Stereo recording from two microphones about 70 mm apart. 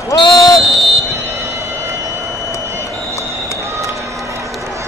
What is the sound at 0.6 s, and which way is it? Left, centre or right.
Buzzer, centre.